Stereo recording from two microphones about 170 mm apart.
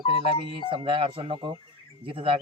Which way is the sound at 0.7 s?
30° right (ahead or behind).